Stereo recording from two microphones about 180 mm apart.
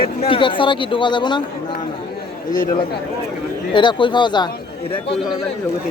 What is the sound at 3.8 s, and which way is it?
Speech, 25° left (ahead or behind).